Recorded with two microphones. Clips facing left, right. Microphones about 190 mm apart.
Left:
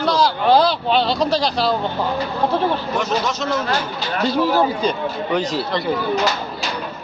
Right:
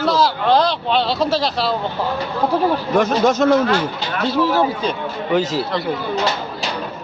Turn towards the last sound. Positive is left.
turn(degrees=0)  # may be behind; listen again after turning